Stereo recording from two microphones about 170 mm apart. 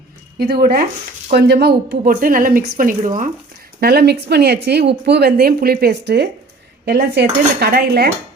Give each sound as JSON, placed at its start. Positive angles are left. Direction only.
{"t": 0.3, "sound": "a woman's voice", "side_deg": -65}
{"t": 3.8, "sound": "speech", "side_deg": -65}